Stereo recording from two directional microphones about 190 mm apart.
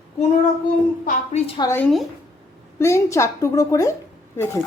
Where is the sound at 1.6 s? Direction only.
15° left (ahead or behind).